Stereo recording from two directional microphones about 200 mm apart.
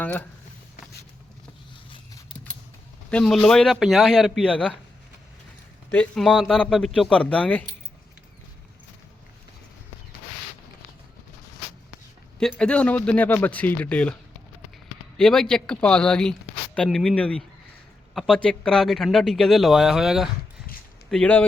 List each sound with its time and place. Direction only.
0.0 s a man's voice: 10° left (ahead or behind)
3.1 s speech: 5° left (ahead or behind)
5.9 s speech: 5° left (ahead or behind)
12.4 s a man's voice: 5° left (ahead or behind)
15.2 s speech: 5° left (ahead or behind)